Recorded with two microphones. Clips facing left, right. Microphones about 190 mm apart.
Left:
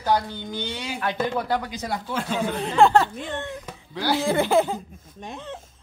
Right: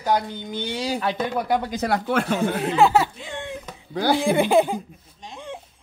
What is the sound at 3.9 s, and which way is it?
Speech, 50° right (ahead or behind).